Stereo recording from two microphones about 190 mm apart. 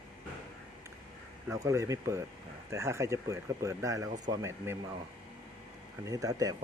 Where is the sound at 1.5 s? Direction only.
15° right (ahead or behind).